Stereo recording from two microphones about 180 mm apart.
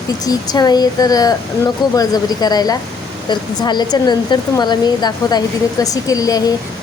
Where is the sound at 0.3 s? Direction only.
20° left (ahead or behind).